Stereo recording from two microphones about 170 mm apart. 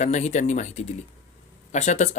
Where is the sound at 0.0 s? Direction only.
45° left (ahead or behind).